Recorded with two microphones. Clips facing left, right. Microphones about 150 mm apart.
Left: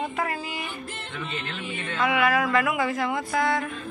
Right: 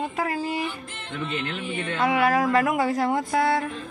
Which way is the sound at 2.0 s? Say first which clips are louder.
Right 2 dB; 35° right (ahead or behind).